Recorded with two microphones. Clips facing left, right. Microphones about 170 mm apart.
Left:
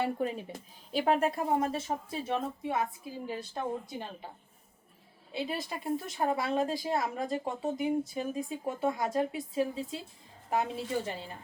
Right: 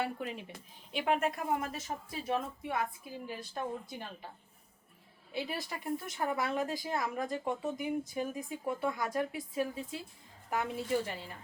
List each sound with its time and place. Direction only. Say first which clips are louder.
0.0 s a woman's voice: left 5 dB; 35° left (ahead or behind)
5.3 s speech: left 3 dB; 20° left (ahead or behind)